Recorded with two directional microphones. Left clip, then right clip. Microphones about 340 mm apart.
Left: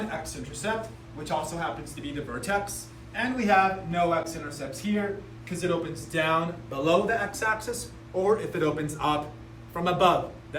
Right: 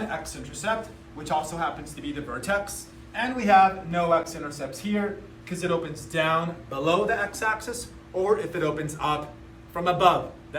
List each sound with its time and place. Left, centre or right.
0.1 s a man's voice: centre